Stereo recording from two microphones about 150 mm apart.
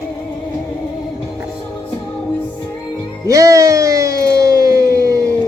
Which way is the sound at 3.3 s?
20° right (ahead or behind).